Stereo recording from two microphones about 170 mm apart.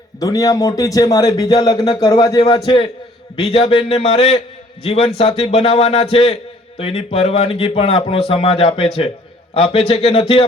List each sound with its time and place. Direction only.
0.2 s a man's voice: 20° left (ahead or behind)